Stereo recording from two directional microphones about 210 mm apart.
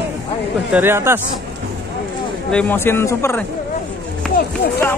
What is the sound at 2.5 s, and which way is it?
Speech, 5° left (ahead or behind).